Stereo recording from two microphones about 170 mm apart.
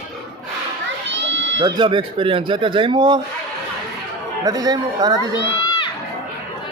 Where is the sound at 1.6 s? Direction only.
25° right (ahead or behind).